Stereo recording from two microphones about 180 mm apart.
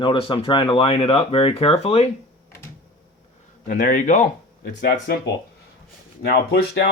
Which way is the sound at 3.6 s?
50° left (ahead or behind).